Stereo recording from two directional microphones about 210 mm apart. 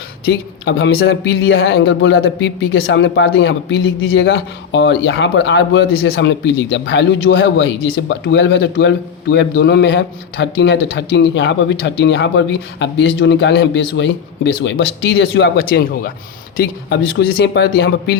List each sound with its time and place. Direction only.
0.3 s speech: 65° left (ahead or behind)
0.9 s speech: 50° left (ahead or behind)
1.4 s speech: 70° left (ahead or behind)
1.7 s a man's voice: 55° left (ahead or behind)